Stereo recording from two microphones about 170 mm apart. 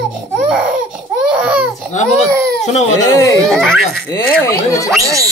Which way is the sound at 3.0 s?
20° left (ahead or behind).